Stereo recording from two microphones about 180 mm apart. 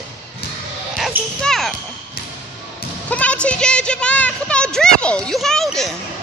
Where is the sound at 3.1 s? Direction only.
5° left (ahead or behind).